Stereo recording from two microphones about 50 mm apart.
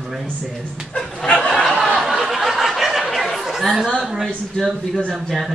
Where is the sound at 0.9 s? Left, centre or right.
Centre.